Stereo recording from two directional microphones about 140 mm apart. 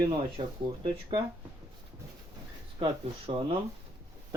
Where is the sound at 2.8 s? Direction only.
45° right (ahead or behind).